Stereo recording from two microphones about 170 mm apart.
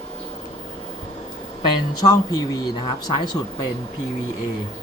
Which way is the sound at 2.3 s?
25° left (ahead or behind).